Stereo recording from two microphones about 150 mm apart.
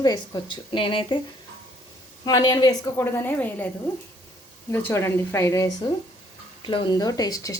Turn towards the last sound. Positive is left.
turn(degrees=25)  # may be behind; listen again after turning